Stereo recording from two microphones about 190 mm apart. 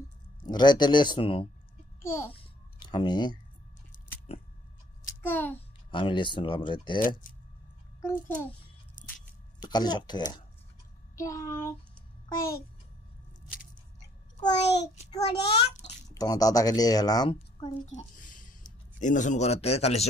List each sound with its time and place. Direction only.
0.5 s a woman's voice: 25° left (ahead or behind)
2.0 s a child's voice: 15° left (ahead or behind)
2.3 s a sound: 25° left (ahead or behind)
5.2 s child singing: 10° left (ahead or behind)
5.9 s a woman's voice: 25° left (ahead or behind)
8.0 s child singing: 10° left (ahead or behind)
9.6 s a woman's voice: 20° left (ahead or behind)
11.1 s child singing: 15° left (ahead or behind)
15.0 s a man's voice: 30° left (ahead or behind)
16.2 s a woman's voice: 20° left (ahead or behind)
17.8 s a sound: 40° left (ahead or behind)
18.9 s a man's voice: 40° left (ahead or behind)